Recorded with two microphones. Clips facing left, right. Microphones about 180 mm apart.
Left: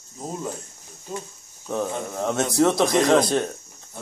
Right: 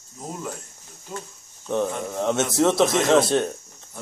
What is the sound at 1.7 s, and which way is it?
Speech, centre (ahead or behind).